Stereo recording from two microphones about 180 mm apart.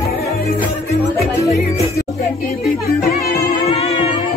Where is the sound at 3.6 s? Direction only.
35° left (ahead or behind).